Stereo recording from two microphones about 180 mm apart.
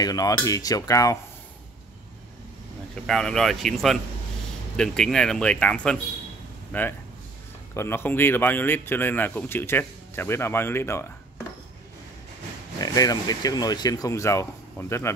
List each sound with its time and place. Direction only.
0.0 s speech: 20° left (ahead or behind)
3.1 s speech: centre (ahead or behind)
12.8 s speech: 20° left (ahead or behind)